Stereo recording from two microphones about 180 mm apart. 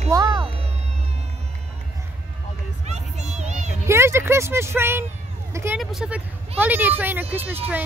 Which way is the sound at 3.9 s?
15° right (ahead or behind).